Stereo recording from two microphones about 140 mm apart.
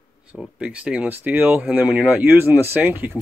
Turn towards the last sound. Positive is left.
turn(degrees=-15)  # may be behind; listen again after turning